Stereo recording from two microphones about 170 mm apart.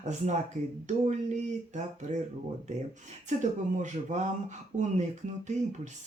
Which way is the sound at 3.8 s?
45° right (ahead or behind).